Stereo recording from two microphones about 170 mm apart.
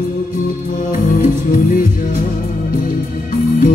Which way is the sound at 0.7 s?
50° left (ahead or behind).